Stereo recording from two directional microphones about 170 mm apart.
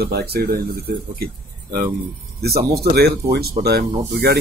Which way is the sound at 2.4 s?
70° right (ahead or behind).